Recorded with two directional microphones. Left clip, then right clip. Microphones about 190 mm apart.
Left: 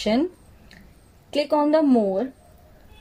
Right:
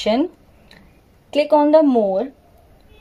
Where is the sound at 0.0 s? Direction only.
20° right (ahead or behind).